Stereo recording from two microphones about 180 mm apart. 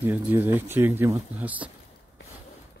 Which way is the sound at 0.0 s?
10° right (ahead or behind).